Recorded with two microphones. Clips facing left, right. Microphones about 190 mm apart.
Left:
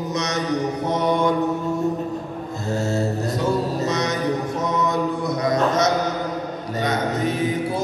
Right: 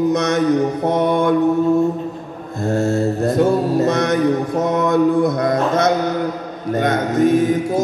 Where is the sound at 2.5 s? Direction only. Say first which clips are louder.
Right 6 dB; 55° right (ahead or behind).